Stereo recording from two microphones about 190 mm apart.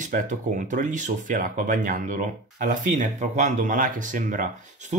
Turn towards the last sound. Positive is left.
turn(degrees=-45)  # may be behind; listen again after turning